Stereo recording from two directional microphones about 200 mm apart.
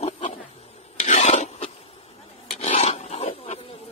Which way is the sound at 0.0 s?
30° left (ahead or behind).